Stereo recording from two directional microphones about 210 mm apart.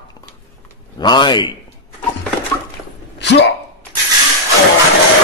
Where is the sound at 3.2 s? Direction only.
55° left (ahead or behind).